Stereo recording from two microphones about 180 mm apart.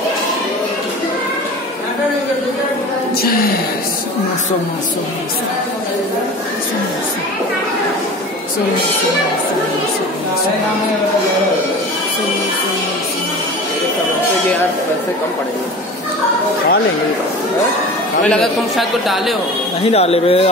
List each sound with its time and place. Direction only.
18.3 s speech: centre (ahead or behind)
19.9 s speech: 35° left (ahead or behind)